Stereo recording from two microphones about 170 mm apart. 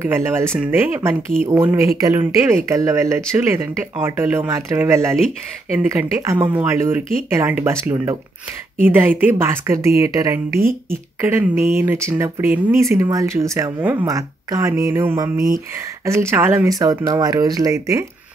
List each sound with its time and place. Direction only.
0.0 s speech: 15° right (ahead or behind)